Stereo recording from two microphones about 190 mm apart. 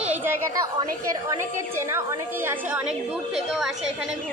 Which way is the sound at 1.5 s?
15° right (ahead or behind).